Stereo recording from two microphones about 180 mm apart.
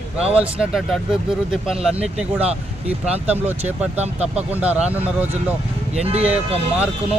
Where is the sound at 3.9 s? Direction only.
35° right (ahead or behind).